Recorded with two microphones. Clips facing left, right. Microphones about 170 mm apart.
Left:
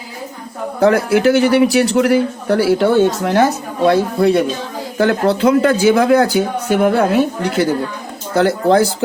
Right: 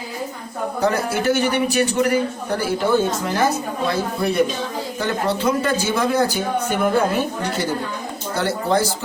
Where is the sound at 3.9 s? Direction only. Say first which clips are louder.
Left 10 dB; 70° left (ahead or behind).